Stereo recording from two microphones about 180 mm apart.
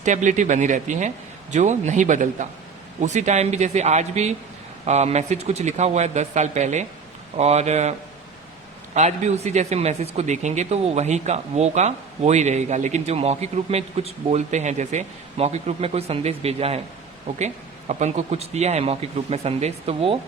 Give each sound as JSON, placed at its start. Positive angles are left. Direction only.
{"t": 0.0, "sound": "speech", "side_deg": -45}
{"t": 9.0, "sound": "speech", "side_deg": -40}